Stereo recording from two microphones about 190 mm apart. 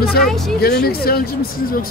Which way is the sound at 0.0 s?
55° left (ahead or behind).